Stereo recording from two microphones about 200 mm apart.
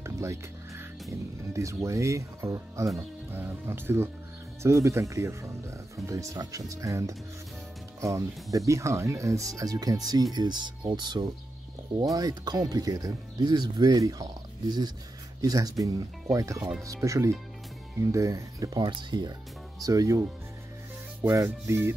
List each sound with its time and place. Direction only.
0.0 s music: 15° right (ahead or behind)
1.5 s speech: 15° right (ahead or behind)